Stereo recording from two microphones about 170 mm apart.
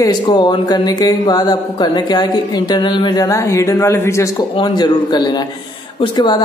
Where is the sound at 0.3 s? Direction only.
25° left (ahead or behind).